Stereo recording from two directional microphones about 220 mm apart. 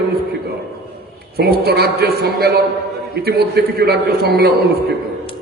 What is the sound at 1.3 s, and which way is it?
A man's voice, 45° right (ahead or behind).